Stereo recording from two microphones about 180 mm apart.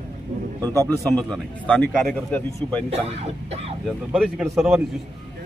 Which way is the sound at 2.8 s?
35° right (ahead or behind).